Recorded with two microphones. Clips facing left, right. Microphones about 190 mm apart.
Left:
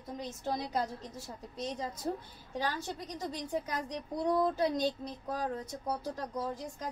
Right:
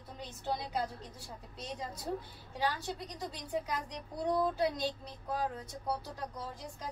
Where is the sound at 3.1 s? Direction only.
45° left (ahead or behind).